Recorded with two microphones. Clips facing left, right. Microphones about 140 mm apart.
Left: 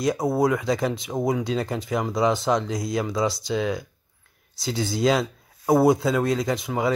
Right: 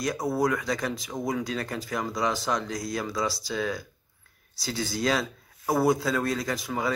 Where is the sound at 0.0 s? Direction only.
25° left (ahead or behind).